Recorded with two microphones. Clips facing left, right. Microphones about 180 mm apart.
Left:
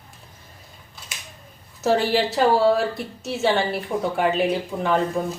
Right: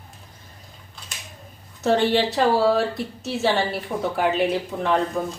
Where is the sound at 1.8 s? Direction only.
Centre (ahead or behind).